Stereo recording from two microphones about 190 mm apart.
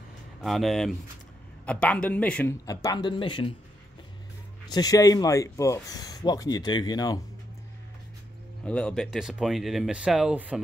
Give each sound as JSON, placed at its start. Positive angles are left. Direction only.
{"t": 0.4, "sound": "speech", "side_deg": 0}
{"t": 2.6, "sound": "speech", "side_deg": 20}
{"t": 4.6, "sound": "speech", "side_deg": 20}
{"t": 8.6, "sound": "speech", "side_deg": 5}